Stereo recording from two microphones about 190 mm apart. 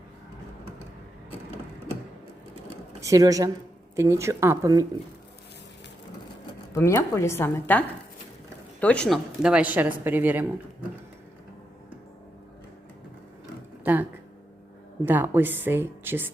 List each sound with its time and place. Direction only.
3.0 s a woman's voice: 15° right (ahead or behind)
6.7 s a woman's voice: 15° left (ahead or behind); by 10.4 s 10° right (ahead or behind)
13.8 s a woman's voice: 10° right (ahead or behind)